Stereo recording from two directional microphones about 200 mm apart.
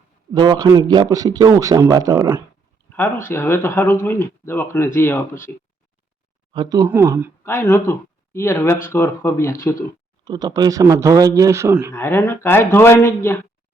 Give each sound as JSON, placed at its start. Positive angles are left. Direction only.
{"t": 0.3, "sound": "a man's voice", "side_deg": -20}
{"t": 2.9, "sound": "speech", "side_deg": 10}
{"t": 6.5, "sound": "a man's voice", "side_deg": -20}
{"t": 7.4, "sound": "speech", "side_deg": 15}
{"t": 10.2, "sound": "a man's voice", "side_deg": -20}
{"t": 11.9, "sound": "speech", "side_deg": 15}